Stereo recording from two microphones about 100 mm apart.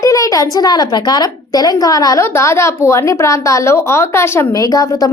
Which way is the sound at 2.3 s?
30° left (ahead or behind).